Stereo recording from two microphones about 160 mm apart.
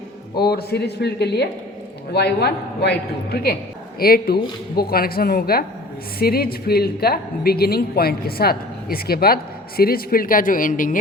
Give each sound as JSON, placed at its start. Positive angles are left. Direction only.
{"t": 0.4, "sound": "a man's voice", "side_deg": 85}
{"t": 4.0, "sound": "a woman's voice", "side_deg": 70}